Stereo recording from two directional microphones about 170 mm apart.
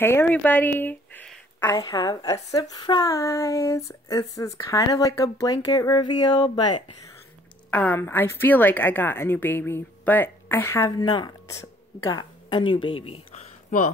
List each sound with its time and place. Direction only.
0.0 s speech: 10° left (ahead or behind)
1.6 s a woman's voice: 20° left (ahead or behind)
7.7 s a woman's voice: 10° left (ahead or behind); by 13.4 s 35° left (ahead or behind)